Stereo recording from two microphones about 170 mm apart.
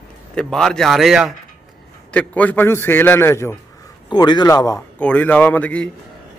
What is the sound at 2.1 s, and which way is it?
A man's voice, 10° left (ahead or behind).